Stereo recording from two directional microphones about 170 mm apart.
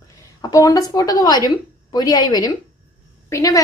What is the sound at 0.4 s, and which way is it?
A woman's voice, 20° left (ahead or behind).